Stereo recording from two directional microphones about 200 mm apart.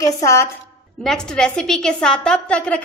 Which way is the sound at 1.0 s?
5° left (ahead or behind).